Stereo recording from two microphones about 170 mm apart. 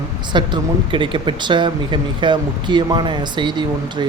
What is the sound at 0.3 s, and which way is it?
A man's voice, 30° right (ahead or behind).